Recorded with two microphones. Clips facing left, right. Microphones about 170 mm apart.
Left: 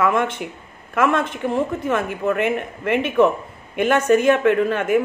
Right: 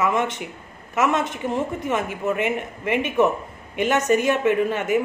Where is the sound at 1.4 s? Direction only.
15° right (ahead or behind).